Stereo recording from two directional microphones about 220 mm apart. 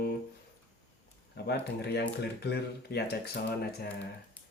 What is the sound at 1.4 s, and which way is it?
Speech, 50° left (ahead or behind).